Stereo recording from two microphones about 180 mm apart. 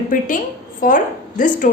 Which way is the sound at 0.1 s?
45° left (ahead or behind).